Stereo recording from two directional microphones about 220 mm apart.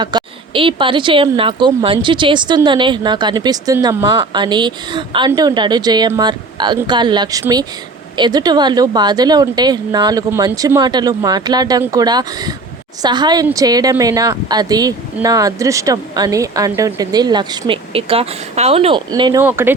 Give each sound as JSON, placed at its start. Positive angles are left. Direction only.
{"t": 0.0, "sound": "a woman's voice", "side_deg": -20}